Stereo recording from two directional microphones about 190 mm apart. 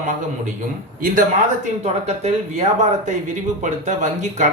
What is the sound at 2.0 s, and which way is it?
Speech, 35° right (ahead or behind).